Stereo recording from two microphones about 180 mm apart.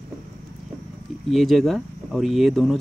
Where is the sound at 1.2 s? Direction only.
Centre (ahead or behind).